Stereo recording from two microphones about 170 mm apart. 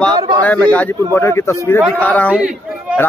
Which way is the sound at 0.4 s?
10° left (ahead or behind).